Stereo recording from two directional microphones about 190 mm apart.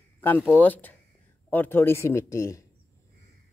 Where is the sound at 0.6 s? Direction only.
10° left (ahead or behind).